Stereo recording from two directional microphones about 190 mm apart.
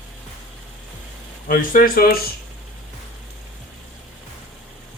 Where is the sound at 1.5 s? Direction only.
45° left (ahead or behind).